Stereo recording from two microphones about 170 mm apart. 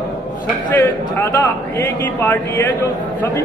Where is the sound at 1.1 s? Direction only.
15° left (ahead or behind).